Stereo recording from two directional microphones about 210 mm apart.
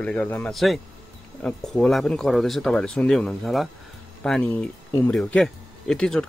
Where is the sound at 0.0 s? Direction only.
5° left (ahead or behind).